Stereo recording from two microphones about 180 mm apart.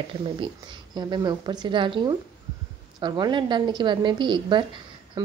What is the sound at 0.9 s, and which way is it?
A woman's voice, 25° right (ahead or behind).